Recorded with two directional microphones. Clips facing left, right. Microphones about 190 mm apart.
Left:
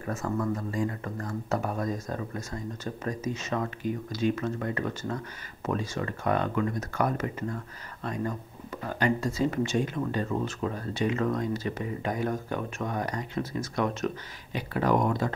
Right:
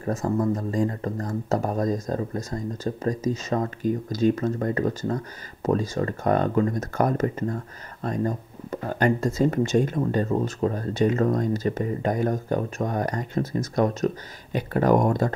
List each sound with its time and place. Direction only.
0.0 s speech: 35° right (ahead or behind)